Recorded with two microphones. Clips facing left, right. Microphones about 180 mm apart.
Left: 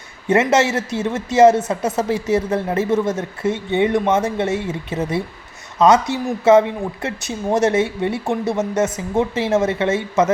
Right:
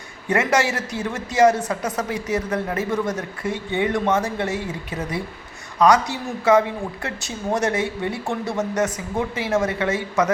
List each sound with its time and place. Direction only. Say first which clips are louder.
0.3 s a woman's voice: left 5 dB; 25° left (ahead or behind)